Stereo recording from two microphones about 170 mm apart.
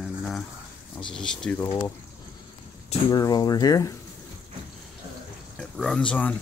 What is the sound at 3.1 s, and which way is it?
Speech, 25° left (ahead or behind).